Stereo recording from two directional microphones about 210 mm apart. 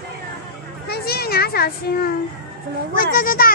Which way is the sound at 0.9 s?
50° left (ahead or behind).